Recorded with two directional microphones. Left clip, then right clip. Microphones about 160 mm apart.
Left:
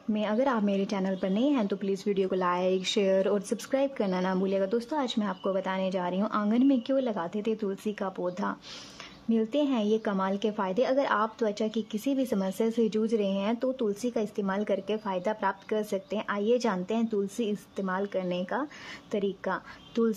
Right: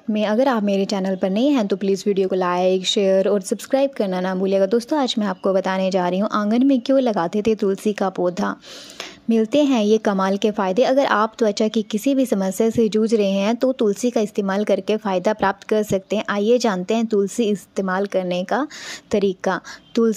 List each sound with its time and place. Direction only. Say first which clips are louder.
0.1 s a woman's voice: right 9 dB; 30° right (ahead or behind)